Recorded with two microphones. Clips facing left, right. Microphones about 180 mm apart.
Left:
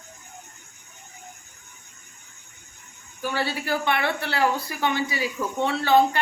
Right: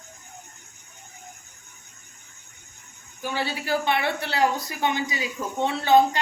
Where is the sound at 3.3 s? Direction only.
20° right (ahead or behind).